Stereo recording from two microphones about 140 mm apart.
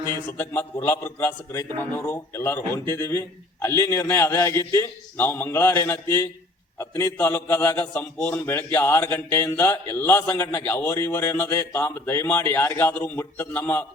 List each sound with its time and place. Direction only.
0.3 s a man's voice: 15° left (ahead or behind)